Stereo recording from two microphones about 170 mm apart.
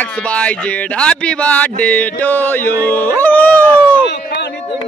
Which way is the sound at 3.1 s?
10° left (ahead or behind).